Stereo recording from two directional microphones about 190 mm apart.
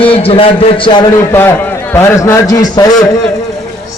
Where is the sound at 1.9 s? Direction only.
15° left (ahead or behind).